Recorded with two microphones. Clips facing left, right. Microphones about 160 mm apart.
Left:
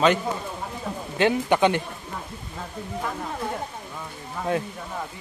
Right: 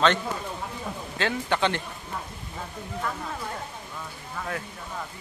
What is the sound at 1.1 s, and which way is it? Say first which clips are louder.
Speech: left 7 dB; 15° left (ahead or behind).